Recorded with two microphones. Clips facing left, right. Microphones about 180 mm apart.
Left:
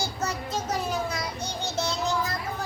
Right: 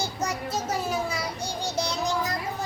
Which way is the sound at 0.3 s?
10° right (ahead or behind).